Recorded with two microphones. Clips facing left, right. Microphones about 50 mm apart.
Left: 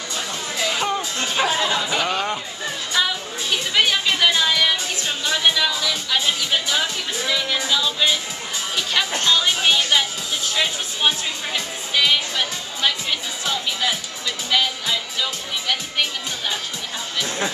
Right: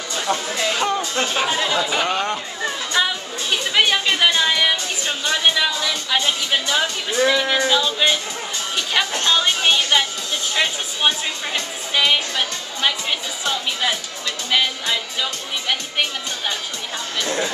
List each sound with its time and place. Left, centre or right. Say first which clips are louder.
0.6 s music: left 2 dB; centre
1.2 s speech: left 3 dB; centre
4.3 s music: right 1 dB; centre
5.0 s music: right 2 dB; centre
5.4 s music: right 1 dB; centre
5.7 s speech: right 1 dB; centre
7.8 s speech: right 2 dB; centre
9.2 s speech: even; centre
9.5 s speech: right 1 dB; centre
11.9 s speech: right 1 dB; centre
14.5 s music: right 1 dB; centre